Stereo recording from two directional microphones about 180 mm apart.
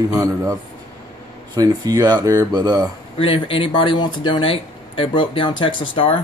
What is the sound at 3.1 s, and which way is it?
Speech, 30° left (ahead or behind).